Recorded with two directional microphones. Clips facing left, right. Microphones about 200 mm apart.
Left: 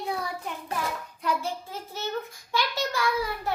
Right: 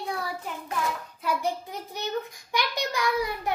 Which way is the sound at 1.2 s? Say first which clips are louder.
Right 1 dB; 15° right (ahead or behind).